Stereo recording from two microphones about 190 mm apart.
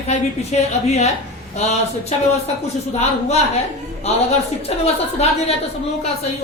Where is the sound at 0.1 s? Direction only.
35° left (ahead or behind).